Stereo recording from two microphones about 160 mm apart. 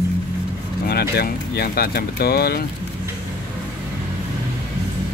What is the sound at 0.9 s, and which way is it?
Speech, 80° left.